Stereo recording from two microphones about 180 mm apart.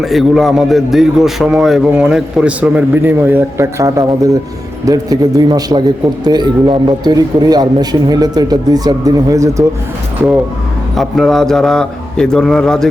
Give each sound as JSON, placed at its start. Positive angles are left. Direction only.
{"t": 0.0, "sound": "a man's voice", "side_deg": 0}
{"t": 10.9, "sound": "a man's voice", "side_deg": 0}